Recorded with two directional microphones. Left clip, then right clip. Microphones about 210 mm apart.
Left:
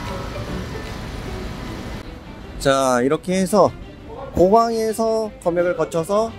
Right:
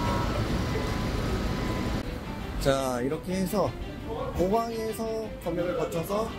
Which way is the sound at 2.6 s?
35° left (ahead or behind).